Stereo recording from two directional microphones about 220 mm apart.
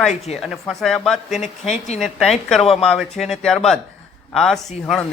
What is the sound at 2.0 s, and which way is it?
Speech, centre (ahead or behind).